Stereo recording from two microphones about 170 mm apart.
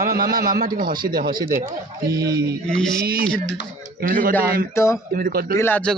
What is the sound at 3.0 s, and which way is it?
Speech, 60° right (ahead or behind).